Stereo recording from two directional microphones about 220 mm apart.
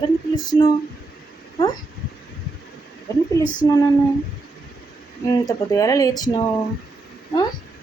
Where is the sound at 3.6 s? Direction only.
15° left (ahead or behind).